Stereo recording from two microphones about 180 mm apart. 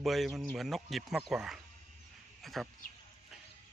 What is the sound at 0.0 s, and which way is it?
Speech, centre (ahead or behind).